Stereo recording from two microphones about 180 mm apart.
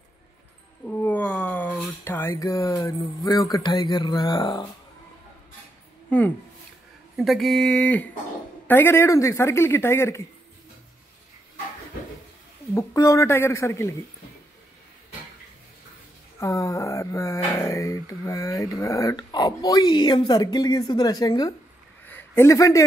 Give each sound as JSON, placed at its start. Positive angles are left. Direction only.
{"t": 0.8, "sound": "speech", "side_deg": 10}
{"t": 6.0, "sound": "a woman's voice", "side_deg": 10}
{"t": 12.7, "sound": "a man's voice", "side_deg": 20}
{"t": 16.3, "sound": "speech", "side_deg": 20}
{"t": 22.0, "sound": "a sound", "side_deg": 10}